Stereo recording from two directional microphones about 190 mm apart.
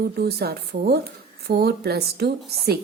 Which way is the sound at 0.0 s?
55° right (ahead or behind).